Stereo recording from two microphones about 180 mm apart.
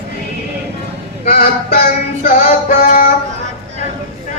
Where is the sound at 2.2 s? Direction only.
50° left (ahead or behind).